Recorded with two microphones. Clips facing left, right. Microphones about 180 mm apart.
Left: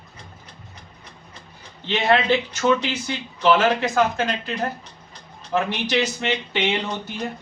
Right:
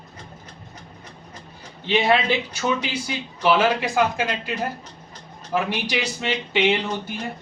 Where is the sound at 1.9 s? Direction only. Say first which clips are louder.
Left 1 dB; 10° right (ahead or behind).